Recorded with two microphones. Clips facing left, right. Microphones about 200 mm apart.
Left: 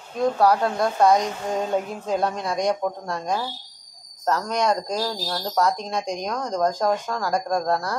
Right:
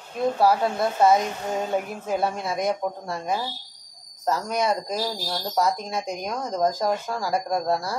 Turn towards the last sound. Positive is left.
turn(degrees=-5)  # may be behind; listen again after turning